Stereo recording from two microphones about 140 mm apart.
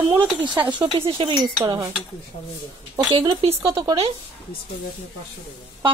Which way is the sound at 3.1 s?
40° right (ahead or behind).